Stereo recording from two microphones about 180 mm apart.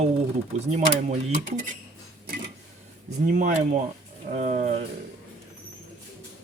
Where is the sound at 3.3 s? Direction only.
45° right (ahead or behind).